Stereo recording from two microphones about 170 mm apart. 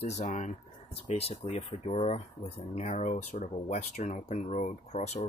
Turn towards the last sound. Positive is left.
turn(degrees=40)  # may be behind; listen again after turning